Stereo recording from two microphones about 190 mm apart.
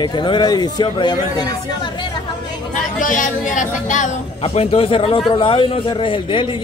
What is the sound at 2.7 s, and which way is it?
Speech, 45° left (ahead or behind).